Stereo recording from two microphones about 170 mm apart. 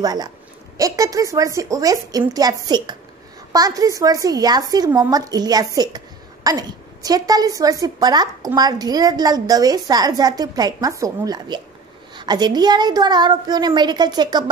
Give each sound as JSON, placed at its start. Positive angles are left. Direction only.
{"t": 0.0, "sound": "a woman's voice", "side_deg": -20}